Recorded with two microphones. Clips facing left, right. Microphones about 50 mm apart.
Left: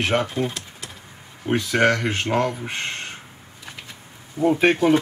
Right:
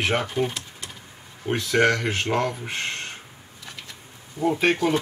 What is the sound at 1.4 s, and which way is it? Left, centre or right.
Speech, centre.